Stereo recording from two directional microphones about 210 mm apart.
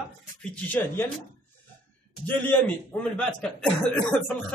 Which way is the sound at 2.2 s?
10° left (ahead or behind).